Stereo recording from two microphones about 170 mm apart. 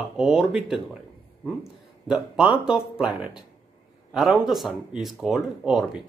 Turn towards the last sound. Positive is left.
turn(degrees=0)  # may be behind; listen again after turning